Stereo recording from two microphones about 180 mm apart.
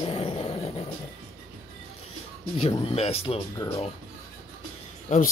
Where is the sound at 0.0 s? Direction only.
30° left (ahead or behind).